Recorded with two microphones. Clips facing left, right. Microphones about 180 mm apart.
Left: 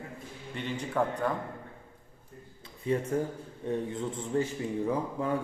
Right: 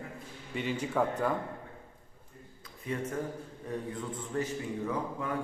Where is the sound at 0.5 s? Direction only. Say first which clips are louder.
Right 1 dB; 5° right (ahead or behind).